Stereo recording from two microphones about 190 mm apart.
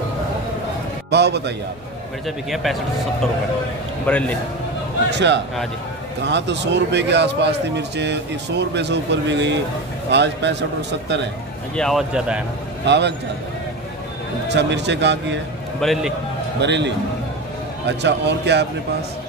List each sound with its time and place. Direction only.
1.1 s a man's voice: 60° right (ahead or behind)
2.2 s speech: centre (ahead or behind)
4.1 s a man's voice: 5° left (ahead or behind)
5.1 s a man's voice: 65° right (ahead or behind)
11.7 s speech: centre (ahead or behind)
12.8 s a man's voice: 65° right (ahead or behind)
14.5 s a man's voice: 65° right (ahead or behind)
15.8 s speech: centre (ahead or behind)
16.6 s a man's voice: 65° right (ahead or behind)